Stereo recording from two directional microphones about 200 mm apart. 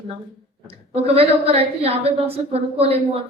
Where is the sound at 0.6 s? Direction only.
30° right (ahead or behind).